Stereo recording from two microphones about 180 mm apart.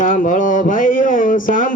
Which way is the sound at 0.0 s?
50° left (ahead or behind).